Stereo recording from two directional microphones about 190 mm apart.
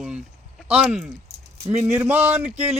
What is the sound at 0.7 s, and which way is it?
A man's voice, 5° right (ahead or behind).